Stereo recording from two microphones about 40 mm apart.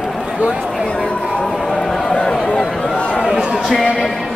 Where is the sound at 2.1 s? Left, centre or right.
Left.